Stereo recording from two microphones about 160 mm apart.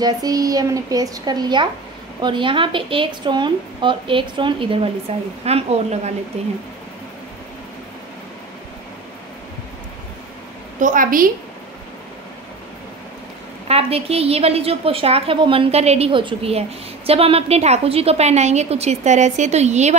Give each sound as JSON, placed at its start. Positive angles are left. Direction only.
{"t": 0.0, "sound": "a woman's voice", "side_deg": -25}
{"t": 10.8, "sound": "a woman's voice", "side_deg": -55}
{"t": 13.7, "sound": "a woman's voice", "side_deg": -40}